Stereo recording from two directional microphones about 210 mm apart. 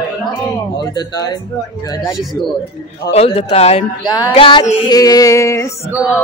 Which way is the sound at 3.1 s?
30° left (ahead or behind).